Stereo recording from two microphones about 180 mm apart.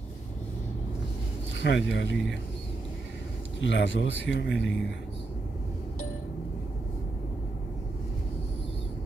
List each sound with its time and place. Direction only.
1.6 s speech: 85° left
3.6 s speech: 80° left